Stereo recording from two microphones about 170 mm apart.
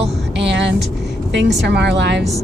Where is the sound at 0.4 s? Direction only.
90° right.